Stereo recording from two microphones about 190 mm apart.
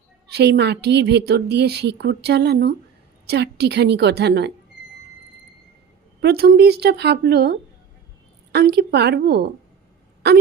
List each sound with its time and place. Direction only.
0.3 s a woman's voice: 60° right (ahead or behind)
6.1 s a woman's voice: 55° right (ahead or behind)